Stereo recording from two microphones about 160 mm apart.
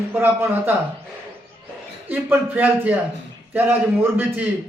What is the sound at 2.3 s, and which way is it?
A man's voice, 15° right (ahead or behind).